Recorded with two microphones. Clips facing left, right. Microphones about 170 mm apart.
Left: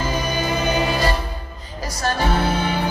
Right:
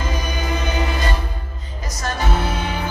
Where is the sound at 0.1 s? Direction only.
30° left (ahead or behind).